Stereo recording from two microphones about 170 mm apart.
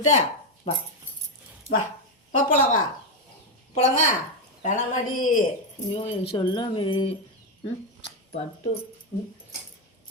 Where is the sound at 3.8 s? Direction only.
45° left (ahead or behind).